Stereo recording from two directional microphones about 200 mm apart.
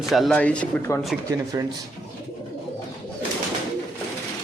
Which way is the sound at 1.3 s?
20° right (ahead or behind).